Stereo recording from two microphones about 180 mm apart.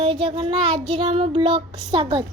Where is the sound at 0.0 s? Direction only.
35° right (ahead or behind).